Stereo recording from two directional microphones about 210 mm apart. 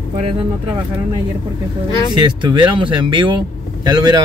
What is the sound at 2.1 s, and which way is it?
Speech, 20° right (ahead or behind).